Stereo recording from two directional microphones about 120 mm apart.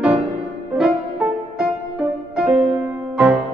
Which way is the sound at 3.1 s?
15° right (ahead or behind).